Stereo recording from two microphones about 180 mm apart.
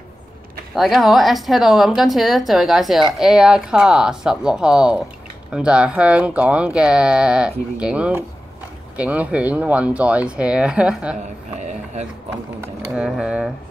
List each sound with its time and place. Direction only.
0.7 s speech: centre (ahead or behind)
11.6 s speech: 40° right (ahead or behind)
12.9 s speech: 5° right (ahead or behind)